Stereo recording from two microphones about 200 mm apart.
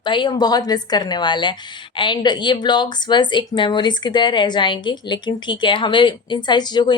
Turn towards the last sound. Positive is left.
turn(degrees=20)  # may be behind; listen again after turning